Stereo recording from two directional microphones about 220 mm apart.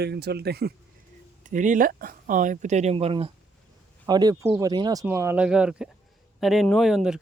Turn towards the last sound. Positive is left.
turn(degrees=0)  # may be behind; listen again after turning